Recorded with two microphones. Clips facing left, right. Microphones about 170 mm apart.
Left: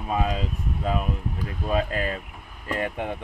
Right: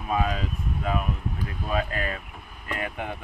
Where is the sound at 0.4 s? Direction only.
30° left (ahead or behind).